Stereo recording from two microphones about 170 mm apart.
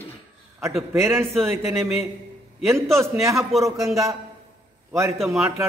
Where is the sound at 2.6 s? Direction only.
15° right (ahead or behind).